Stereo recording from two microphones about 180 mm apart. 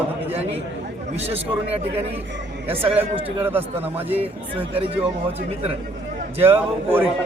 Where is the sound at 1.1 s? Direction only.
35° right (ahead or behind).